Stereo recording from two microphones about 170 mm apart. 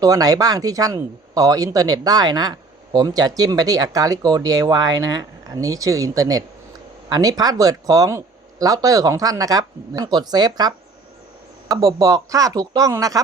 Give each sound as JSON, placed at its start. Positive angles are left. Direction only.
{"t": 0.0, "sound": "speech", "side_deg": -20}